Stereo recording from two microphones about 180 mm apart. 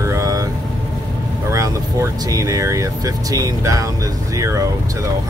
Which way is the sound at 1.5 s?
20° right (ahead or behind).